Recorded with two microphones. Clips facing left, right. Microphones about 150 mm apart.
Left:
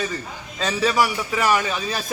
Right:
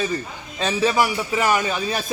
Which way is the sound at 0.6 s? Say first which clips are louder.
Right 2 dB; 15° right (ahead or behind).